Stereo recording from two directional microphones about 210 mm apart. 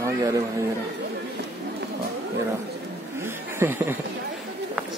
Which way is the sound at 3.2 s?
10° right (ahead or behind).